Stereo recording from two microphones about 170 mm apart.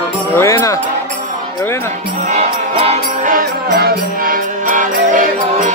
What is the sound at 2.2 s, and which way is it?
Music, 45° right (ahead or behind).